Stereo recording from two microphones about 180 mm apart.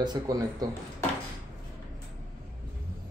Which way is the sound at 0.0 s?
20° right (ahead or behind).